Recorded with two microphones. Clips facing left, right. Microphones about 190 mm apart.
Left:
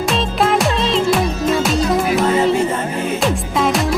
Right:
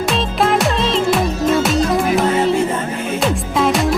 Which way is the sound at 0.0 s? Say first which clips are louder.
Even; centre (ahead or behind).